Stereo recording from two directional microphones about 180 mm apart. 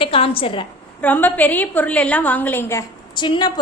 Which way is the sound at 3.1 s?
25° left (ahead or behind).